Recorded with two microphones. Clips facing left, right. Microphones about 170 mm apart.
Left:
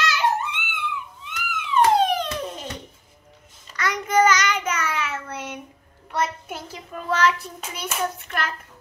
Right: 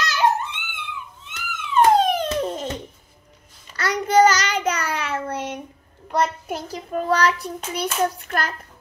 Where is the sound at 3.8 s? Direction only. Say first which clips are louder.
Right 4 dB; 35° right (ahead or behind).